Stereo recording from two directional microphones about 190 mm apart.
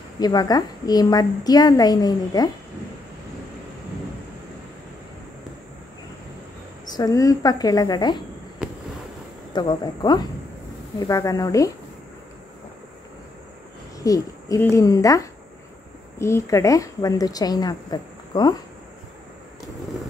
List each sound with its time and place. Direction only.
0.2 s a woman's voice: 20° left (ahead or behind)
7.0 s a woman's voice: 20° left (ahead or behind)
9.5 s a woman's voice: 20° left (ahead or behind)
13.9 s a woman's voice: 20° left (ahead or behind)